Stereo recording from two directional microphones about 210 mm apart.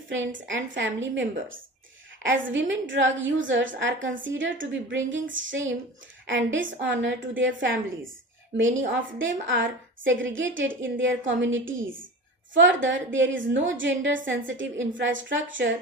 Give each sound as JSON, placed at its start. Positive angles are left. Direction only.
{"t": 0.1, "sound": "a woman's voice", "side_deg": -65}